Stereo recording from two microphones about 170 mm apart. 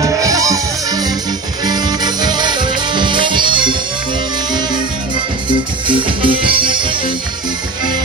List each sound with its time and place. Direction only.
0.0 s music: 20° right (ahead or behind)
5.5 s music: 30° right (ahead or behind)